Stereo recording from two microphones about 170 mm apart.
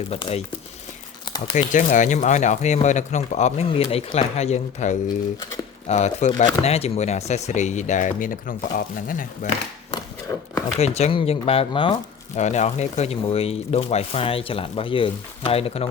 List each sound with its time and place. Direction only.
0.1 s speech: 35° left (ahead or behind)
1.5 s speech: 45° left (ahead or behind)
9.9 s a sound: 20° left (ahead or behind)
10.8 s speech: 40° left (ahead or behind)
12.4 s speech: 45° left (ahead or behind)